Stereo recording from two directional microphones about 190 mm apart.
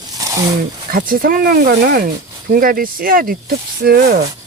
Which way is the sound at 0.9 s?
50° right (ahead or behind).